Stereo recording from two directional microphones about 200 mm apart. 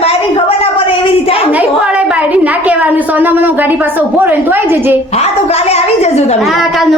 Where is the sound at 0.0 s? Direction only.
30° left (ahead or behind).